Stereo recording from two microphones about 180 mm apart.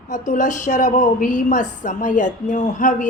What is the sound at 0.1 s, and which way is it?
A woman's voice, 45° left (ahead or behind).